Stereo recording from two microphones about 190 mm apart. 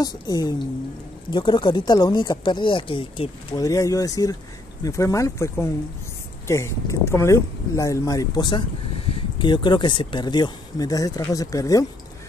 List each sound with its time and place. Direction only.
0.0 s speech: 20° left (ahead or behind)
3.6 s speech: 15° left (ahead or behind)